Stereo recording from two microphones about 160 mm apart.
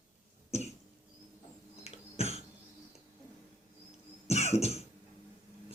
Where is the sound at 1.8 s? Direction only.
40° left (ahead or behind).